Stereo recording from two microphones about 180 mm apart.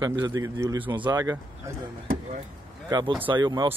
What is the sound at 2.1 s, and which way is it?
Vehicle, 40° right (ahead or behind).